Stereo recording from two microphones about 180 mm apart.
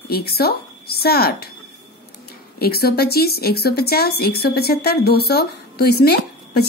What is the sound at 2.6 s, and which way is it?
Speech, 60° left (ahead or behind).